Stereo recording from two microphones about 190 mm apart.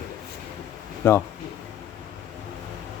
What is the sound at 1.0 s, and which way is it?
Speech, 10° left (ahead or behind).